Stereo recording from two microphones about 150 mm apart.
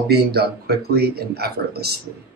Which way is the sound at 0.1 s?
90° right.